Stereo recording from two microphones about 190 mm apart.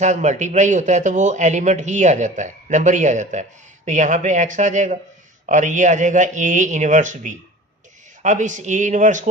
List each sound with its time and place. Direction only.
0.0 s a man's voice: 40° right (ahead or behind)